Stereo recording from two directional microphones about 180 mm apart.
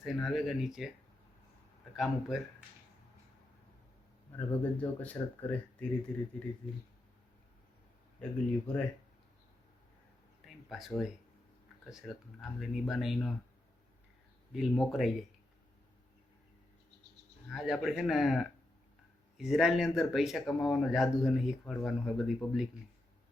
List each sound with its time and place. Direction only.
0.0 s speech: centre (ahead or behind)
2.0 s speech: centre (ahead or behind)
4.4 s speech: 10° left (ahead or behind)
8.2 s speech: 5° left (ahead or behind)
10.4 s a sound: centre (ahead or behind)
11.9 s speech: centre (ahead or behind)
14.5 s speech: centre (ahead or behind)
17.5 s speech: centre (ahead or behind)